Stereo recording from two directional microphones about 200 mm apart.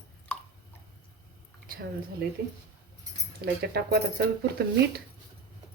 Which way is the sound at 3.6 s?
55° right (ahead or behind).